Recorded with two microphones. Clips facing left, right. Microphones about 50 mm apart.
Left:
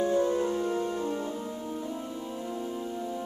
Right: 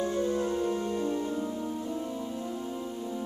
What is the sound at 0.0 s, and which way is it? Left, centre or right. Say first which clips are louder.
Music: left 3 dB; centre.